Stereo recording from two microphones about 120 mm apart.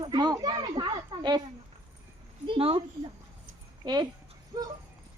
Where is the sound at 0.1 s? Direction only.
35° right (ahead or behind).